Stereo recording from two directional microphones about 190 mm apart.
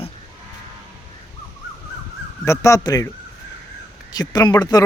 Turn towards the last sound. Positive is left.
turn(degrees=20)  # may be behind; listen again after turning